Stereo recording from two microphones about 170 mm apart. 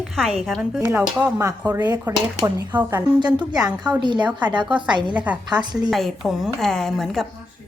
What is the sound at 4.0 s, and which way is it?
Speech, 25° right (ahead or behind).